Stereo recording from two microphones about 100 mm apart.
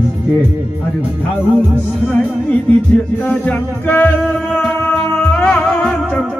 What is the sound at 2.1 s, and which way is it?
Music, 10° left (ahead or behind).